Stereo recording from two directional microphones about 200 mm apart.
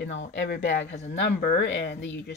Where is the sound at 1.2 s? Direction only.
50° left (ahead or behind).